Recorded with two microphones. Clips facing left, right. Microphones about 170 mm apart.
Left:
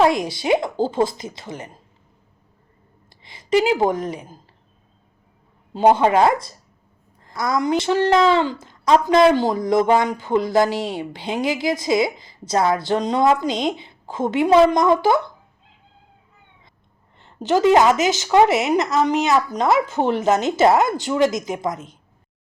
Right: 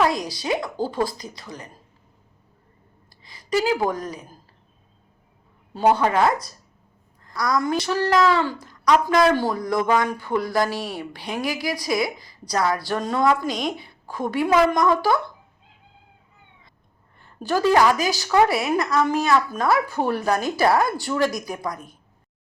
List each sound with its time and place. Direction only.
0.2 s a woman's voice: 25° left (ahead or behind)
3.2 s a woman's voice: 25° left (ahead or behind)
5.7 s a woman's voice: 20° left (ahead or behind)
17.2 s a woman's voice: 20° left (ahead or behind)